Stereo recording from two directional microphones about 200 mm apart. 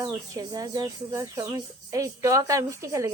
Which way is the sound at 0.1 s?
20° right (ahead or behind).